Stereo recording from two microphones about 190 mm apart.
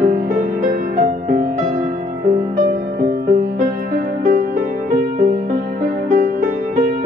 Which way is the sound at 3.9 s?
45° right (ahead or behind).